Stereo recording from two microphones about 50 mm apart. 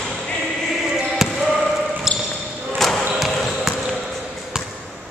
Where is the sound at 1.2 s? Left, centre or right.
Centre.